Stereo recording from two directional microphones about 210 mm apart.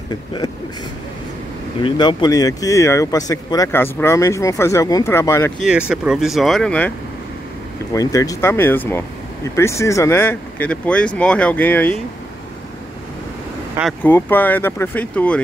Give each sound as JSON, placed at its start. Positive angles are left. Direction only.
{"t": 0.1, "sound": "speech", "side_deg": 20}
{"t": 1.8, "sound": "speech", "side_deg": 20}
{"t": 5.6, "sound": "speech", "side_deg": -5}
{"t": 7.9, "sound": "speech", "side_deg": 15}
{"t": 14.0, "sound": "speech", "side_deg": 10}